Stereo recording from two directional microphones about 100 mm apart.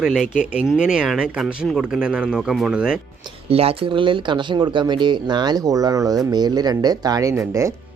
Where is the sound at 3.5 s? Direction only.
75° right (ahead or behind); by 7.7 s 30° right (ahead or behind).